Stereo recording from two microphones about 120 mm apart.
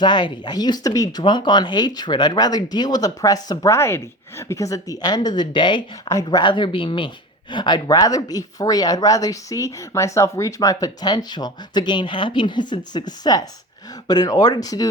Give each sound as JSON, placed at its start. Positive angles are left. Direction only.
{"t": 0.0, "sound": "speech", "side_deg": 40}